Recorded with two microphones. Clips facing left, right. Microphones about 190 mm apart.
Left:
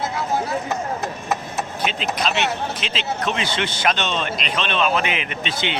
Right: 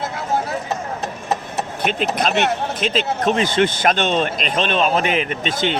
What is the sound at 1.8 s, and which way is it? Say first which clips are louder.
Speech: right 4 dB; 55° right (ahead or behind).